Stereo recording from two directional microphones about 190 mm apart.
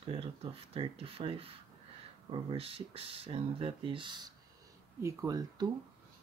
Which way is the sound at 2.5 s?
30° right (ahead or behind).